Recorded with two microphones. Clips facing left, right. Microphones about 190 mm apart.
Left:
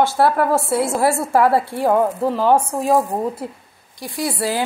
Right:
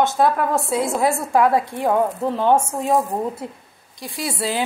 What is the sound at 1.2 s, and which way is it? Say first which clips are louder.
A woman's voice: left 1 dB; 5° left (ahead or behind).